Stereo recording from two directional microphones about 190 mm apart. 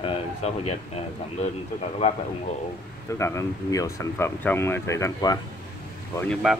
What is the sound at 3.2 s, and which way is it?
Speech, 15° left (ahead or behind).